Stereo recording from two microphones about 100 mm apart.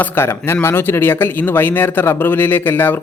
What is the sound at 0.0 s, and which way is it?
Speech, 25° left (ahead or behind).